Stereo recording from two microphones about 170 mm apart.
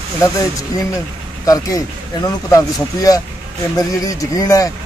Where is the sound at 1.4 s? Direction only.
20° left (ahead or behind).